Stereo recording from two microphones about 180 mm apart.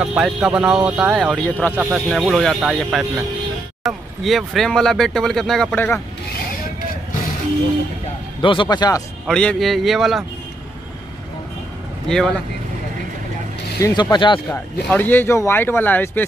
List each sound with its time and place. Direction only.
0.0 s speech: 5° right (ahead or behind)
8.4 s speech: 25° left (ahead or behind)
9.2 s speech: 5° left (ahead or behind)
12.1 s speech: centre (ahead or behind)
13.8 s speech: 15° left (ahead or behind)
14.1 s speech: 25° left (ahead or behind)
14.5 s speech: 10° left (ahead or behind)